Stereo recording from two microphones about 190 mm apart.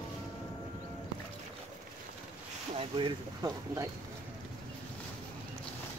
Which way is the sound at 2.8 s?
25° right (ahead or behind).